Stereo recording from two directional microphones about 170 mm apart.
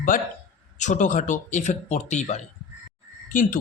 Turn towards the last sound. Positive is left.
turn(degrees=50)  # may be behind; listen again after turning